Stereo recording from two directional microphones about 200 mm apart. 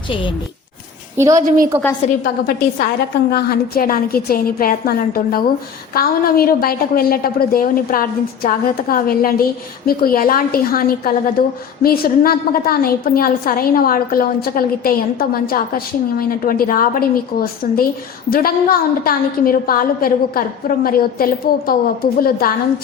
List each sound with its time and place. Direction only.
1.1 s a woman's voice: 15° right (ahead or behind)
1.4 s a woman's voice: 45° right (ahead or behind)
2.0 s a woman's voice: 35° left (ahead or behind)
2.7 s a woman's voice: 50° left (ahead or behind)